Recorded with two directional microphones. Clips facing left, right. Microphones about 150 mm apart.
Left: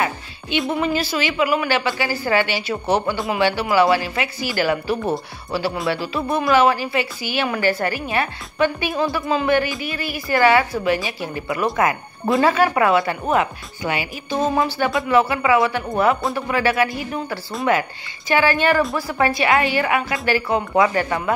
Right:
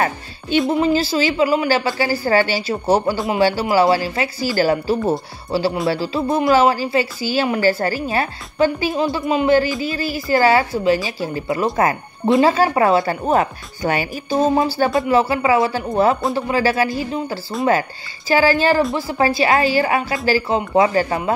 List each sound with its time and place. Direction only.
0.7 s a woman's voice: 25° right (ahead or behind)